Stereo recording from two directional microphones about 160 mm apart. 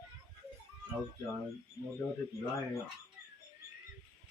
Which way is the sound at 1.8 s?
20° left (ahead or behind).